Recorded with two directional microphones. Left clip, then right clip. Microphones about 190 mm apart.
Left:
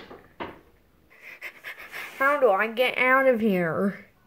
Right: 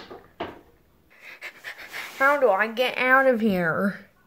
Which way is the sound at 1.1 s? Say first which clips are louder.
Even; centre (ahead or behind).